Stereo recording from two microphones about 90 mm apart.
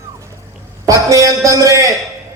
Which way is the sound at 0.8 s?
40° right (ahead or behind).